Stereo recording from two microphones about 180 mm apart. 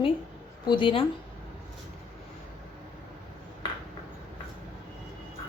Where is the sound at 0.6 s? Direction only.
25° left (ahead or behind).